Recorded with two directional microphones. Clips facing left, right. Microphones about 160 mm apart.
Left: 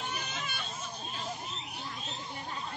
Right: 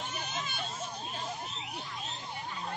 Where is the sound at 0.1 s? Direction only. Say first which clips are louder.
Even; 65° left (ahead or behind).